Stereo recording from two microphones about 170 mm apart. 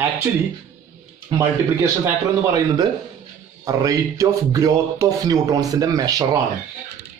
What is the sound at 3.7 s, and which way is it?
Speech, 20° right (ahead or behind).